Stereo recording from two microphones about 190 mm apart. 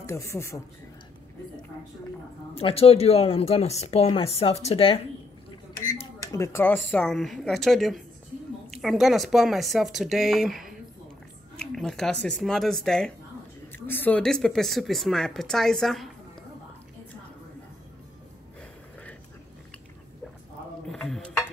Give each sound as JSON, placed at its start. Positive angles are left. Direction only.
{"t": 0.0, "sound": "speech", "side_deg": 15}
{"t": 2.5, "sound": "speech", "side_deg": 30}
{"t": 6.3, "sound": "speech", "side_deg": 15}
{"t": 11.7, "sound": "speech", "side_deg": 0}
{"t": 20.9, "sound": "a sound", "side_deg": 0}